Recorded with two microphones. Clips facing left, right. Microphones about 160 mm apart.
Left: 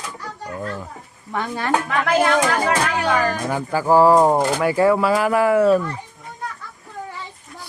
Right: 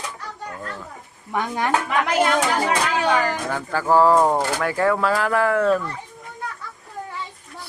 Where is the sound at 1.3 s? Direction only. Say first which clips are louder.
Right 1 dB; 15° right (ahead or behind).